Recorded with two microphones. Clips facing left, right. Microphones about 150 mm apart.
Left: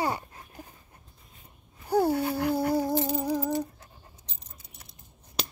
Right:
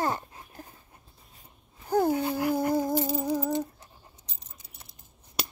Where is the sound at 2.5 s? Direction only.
10° left (ahead or behind).